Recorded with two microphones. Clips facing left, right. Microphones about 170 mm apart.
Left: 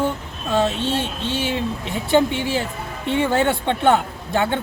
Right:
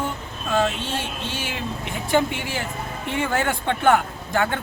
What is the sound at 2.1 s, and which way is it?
Speech, 25° left (ahead or behind).